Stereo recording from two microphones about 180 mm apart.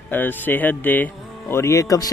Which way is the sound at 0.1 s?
10° left (ahead or behind).